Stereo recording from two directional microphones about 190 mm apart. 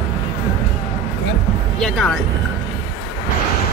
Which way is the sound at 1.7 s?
Centre (ahead or behind).